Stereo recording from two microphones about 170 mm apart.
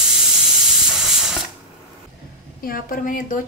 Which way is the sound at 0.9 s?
Centre (ahead or behind).